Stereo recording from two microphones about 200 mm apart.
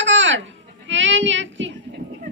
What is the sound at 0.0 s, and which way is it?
Goat, 65° right (ahead or behind).